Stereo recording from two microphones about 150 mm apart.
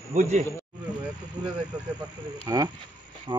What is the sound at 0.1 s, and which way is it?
Speech, 55° right (ahead or behind).